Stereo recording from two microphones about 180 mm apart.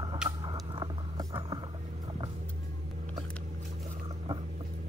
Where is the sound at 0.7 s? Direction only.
25° right (ahead or behind).